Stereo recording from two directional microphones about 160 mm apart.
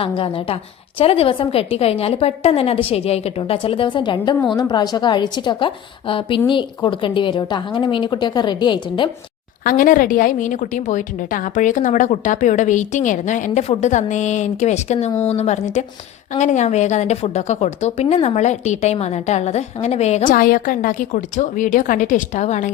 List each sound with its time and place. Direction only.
0.0 s a woman's voice: 35° left (ahead or behind)
9.6 s a woman's voice: 60° left (ahead or behind)
20.3 s a woman's voice: 60° left (ahead or behind)